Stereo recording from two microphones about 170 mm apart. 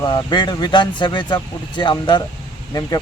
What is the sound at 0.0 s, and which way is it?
Speech, 25° left (ahead or behind).